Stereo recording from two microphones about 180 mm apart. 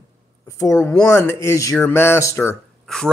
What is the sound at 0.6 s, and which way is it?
Speech, 20° left (ahead or behind).